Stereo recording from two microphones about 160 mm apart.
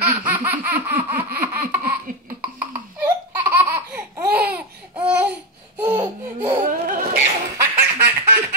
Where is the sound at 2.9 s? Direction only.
15° right (ahead or behind).